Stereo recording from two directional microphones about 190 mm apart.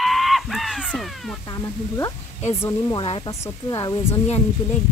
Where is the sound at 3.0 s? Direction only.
30° left (ahead or behind).